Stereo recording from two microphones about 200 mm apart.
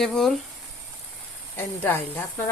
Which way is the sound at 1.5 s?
10° left (ahead or behind).